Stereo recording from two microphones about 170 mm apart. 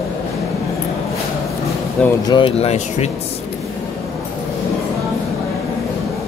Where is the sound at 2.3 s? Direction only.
35° left (ahead or behind).